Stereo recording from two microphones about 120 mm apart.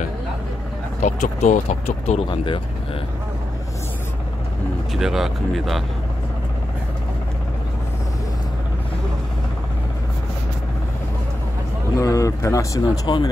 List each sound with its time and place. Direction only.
1.0 s speech: 85° left; by 2.2 s 65° left (ahead or behind)
2.2 s speech: 45° left (ahead or behind)
4.9 s speech: 5° right (ahead or behind)
12.0 s speech: 30° left (ahead or behind)